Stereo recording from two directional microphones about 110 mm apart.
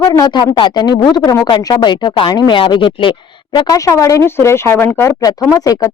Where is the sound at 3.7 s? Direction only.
30° left (ahead or behind).